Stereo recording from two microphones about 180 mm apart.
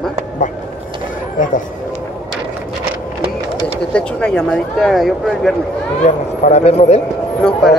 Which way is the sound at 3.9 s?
5° left (ahead or behind).